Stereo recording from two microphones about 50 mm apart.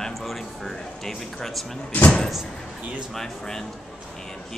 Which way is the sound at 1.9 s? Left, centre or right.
Left.